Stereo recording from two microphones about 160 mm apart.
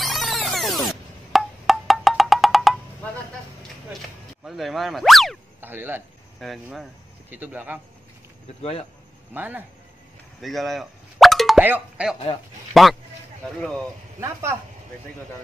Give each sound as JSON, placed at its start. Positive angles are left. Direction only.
{"t": 0.0, "sound": "music", "side_deg": 0}
{"t": 4.5, "sound": "speech", "side_deg": 0}
{"t": 5.6, "sound": "speech", "side_deg": -10}
{"t": 6.4, "sound": "speech", "side_deg": 0}
{"t": 7.2, "sound": "speech", "side_deg": -10}
{"t": 9.3, "sound": "speech", "side_deg": -10}
{"t": 10.4, "sound": "plop", "side_deg": 0}
{"t": 11.6, "sound": "speech", "side_deg": -10}
{"t": 14.2, "sound": "speech", "side_deg": -15}